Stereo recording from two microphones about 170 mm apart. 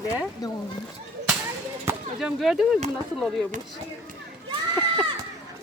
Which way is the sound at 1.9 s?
15° right (ahead or behind).